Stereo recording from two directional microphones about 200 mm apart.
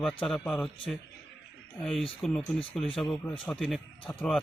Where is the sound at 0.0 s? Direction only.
5° left (ahead or behind).